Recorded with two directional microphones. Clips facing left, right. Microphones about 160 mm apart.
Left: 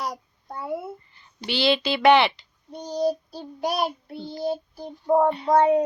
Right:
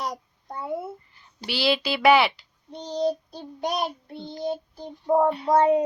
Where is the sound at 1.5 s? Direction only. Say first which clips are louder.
Left 2 dB; 5° right (ahead or behind).